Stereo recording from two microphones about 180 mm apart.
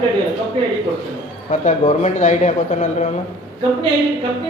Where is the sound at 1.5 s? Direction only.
40° left (ahead or behind).